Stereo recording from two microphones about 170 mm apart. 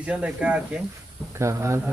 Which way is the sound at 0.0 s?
5° right (ahead or behind).